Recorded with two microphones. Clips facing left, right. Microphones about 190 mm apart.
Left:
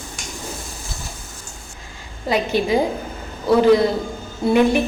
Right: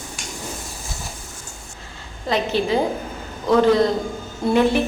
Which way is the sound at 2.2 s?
10° left (ahead or behind).